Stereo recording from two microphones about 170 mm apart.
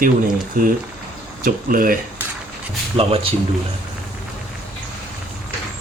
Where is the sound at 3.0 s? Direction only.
35° right (ahead or behind).